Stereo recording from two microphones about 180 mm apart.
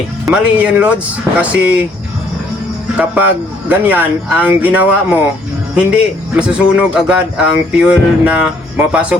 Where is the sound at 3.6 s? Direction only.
10° right (ahead or behind).